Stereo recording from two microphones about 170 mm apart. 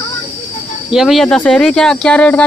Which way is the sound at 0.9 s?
Centre (ahead or behind).